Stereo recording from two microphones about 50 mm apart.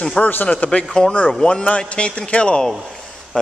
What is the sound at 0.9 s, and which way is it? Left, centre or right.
Speech, centre.